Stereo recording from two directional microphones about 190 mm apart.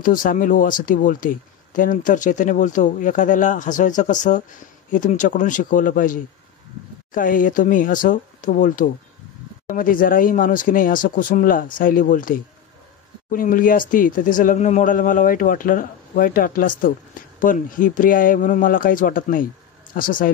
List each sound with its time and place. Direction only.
0.0 s speech: 45° left (ahead or behind)